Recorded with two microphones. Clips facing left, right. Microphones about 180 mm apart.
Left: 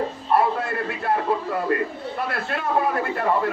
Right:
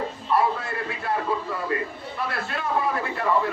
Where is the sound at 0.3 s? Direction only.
55° left (ahead or behind).